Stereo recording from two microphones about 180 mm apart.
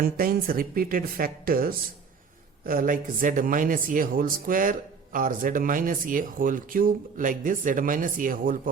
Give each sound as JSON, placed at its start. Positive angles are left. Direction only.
{"t": 0.0, "sound": "speech", "side_deg": -55}